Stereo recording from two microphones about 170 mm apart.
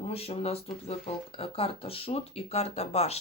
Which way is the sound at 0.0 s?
35° left (ahead or behind).